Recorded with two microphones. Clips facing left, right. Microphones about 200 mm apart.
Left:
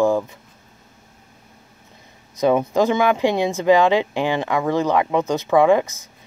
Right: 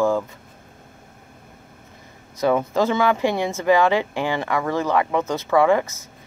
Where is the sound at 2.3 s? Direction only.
20° left (ahead or behind).